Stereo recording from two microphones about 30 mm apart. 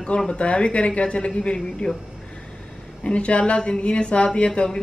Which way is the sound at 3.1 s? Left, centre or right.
Left.